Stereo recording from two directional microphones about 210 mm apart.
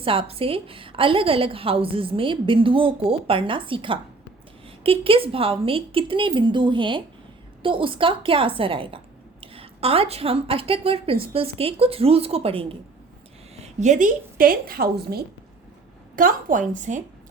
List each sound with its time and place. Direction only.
0.0 s a woman's voice: 25° right (ahead or behind)